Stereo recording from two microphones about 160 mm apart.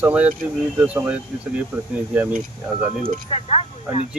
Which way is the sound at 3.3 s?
40° left (ahead or behind).